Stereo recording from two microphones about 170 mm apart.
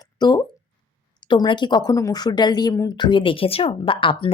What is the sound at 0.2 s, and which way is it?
Speech, 25° left (ahead or behind).